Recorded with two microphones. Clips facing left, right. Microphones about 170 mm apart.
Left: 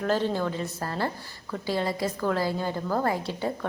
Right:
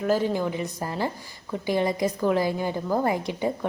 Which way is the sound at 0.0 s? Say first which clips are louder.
Right 2 dB; 10° right (ahead or behind).